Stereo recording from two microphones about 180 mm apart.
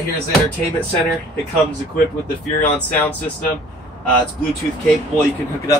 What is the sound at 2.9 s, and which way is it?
Speech, 10° left (ahead or behind).